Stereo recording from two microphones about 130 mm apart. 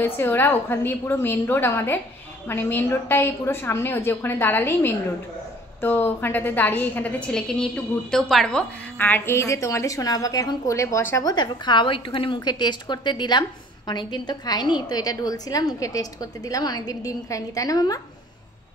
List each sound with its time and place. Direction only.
0.0 s a woman's voice: 15° left (ahead or behind)
11.2 s a woman's voice: 35° left (ahead or behind)